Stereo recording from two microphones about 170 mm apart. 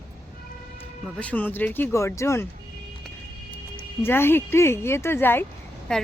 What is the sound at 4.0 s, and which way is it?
Speech, 15° left (ahead or behind).